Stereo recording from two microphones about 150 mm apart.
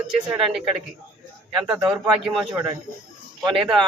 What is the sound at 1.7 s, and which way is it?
Speech, 25° right (ahead or behind).